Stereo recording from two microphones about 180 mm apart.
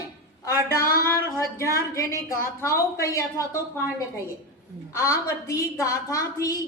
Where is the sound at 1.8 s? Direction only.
15° left (ahead or behind).